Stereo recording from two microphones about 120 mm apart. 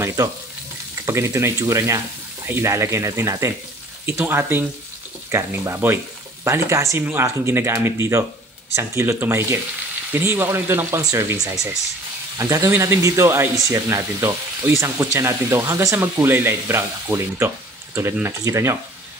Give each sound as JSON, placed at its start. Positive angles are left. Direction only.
{"t": 0.0, "sound": "speech", "side_deg": -25}